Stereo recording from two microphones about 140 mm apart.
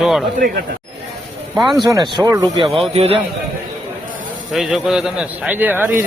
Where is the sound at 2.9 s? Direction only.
45° right (ahead or behind).